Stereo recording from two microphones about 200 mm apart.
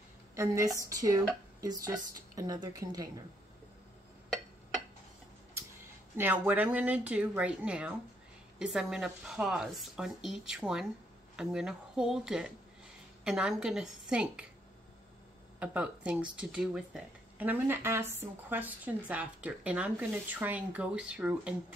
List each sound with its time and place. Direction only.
0.4 s speech: 15° right (ahead or behind)
6.1 s speech: 10° right (ahead or behind)
15.6 s speech: 5° right (ahead or behind)